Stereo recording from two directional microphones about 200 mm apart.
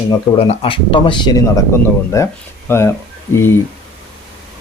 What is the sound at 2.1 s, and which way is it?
Speech, 15° left (ahead or behind).